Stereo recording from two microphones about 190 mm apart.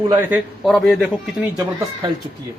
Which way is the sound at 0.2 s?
10° right (ahead or behind).